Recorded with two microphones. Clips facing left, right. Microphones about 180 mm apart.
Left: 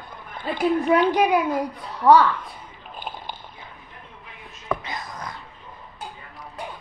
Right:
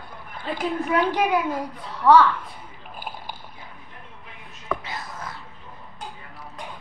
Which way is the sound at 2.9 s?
10° right (ahead or behind).